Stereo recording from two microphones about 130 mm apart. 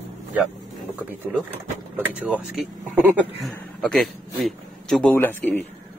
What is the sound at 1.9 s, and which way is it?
Speech, 10° right (ahead or behind).